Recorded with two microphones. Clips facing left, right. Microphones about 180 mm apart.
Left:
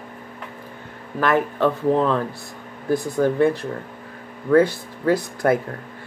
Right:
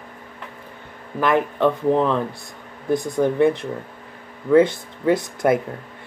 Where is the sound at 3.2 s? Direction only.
20° right (ahead or behind).